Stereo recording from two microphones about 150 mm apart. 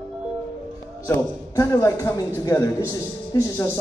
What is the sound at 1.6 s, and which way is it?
Speech, 20° left (ahead or behind).